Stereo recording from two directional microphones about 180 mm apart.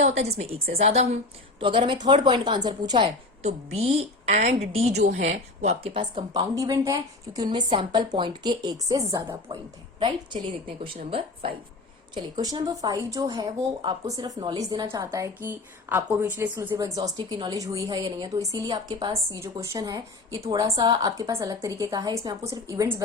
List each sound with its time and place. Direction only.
0.0 s a woman's voice: 35° right (ahead or behind)
3.4 s a woman's voice: 35° right (ahead or behind); by 9.6 s 20° right (ahead or behind)
12.1 s speech: 20° right (ahead or behind)